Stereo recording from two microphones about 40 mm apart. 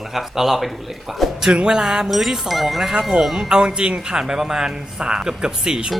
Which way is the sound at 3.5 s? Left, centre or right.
Right.